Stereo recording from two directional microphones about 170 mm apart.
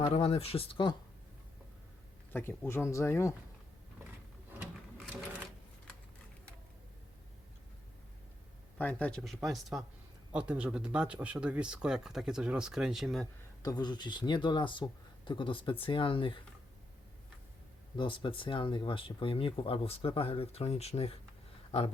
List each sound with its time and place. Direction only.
0.0 s speech: 35° left (ahead or behind)
2.3 s speech: 15° left (ahead or behind)
8.8 s speech: 10° left (ahead or behind)
13.6 s speech: 20° left (ahead or behind)
17.9 s speech: 30° left (ahead or behind)